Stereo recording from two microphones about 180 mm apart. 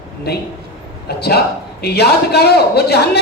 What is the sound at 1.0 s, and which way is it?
A woman's voice, 60° left (ahead or behind).